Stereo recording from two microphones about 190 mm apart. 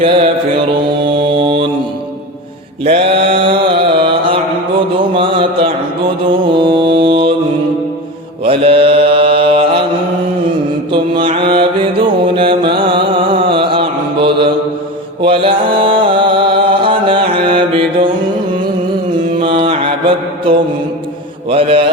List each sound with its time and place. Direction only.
1.4 s mantra: 30° right (ahead or behind)
2.8 s mantra: 30° right (ahead or behind)
5.1 s a sound: 25° right (ahead or behind)
6.5 s mantra: 25° right (ahead or behind)
8.4 s mantra: 30° right (ahead or behind)
10.9 s mantra: 25° right (ahead or behind)
11.5 s music: 25° right (ahead or behind)
15.2 s mantra: 30° right (ahead or behind)
19.4 s mantra: 25° right (ahead or behind)